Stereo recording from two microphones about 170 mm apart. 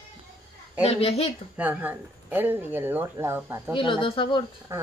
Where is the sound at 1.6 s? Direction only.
10° right (ahead or behind).